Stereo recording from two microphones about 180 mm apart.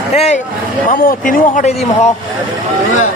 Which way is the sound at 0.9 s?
50° left (ahead or behind).